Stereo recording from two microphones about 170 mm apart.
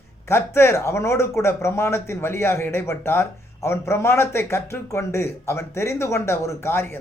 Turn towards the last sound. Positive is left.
turn(degrees=15)  # may be behind; listen again after turning